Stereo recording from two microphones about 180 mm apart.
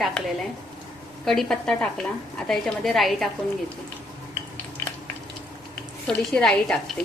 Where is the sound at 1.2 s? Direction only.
Centre (ahead or behind).